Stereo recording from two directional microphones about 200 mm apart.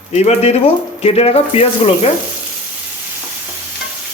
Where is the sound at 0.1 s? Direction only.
35° left (ahead or behind).